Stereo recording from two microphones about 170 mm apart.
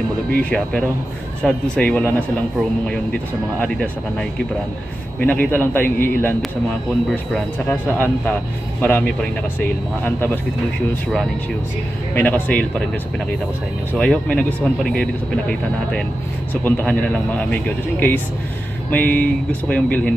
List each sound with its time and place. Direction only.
0.3 s speech: 10° left (ahead or behind)
7.1 s speech: 5° left (ahead or behind)
12.2 s speech: 10° left (ahead or behind)
13.9 s speech: 5° left (ahead or behind)
16.6 s speech: 10° left (ahead or behind)